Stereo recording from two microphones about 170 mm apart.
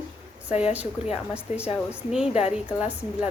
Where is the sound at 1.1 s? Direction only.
5° right (ahead or behind).